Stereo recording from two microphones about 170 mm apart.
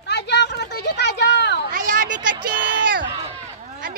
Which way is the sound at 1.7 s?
50° right (ahead or behind).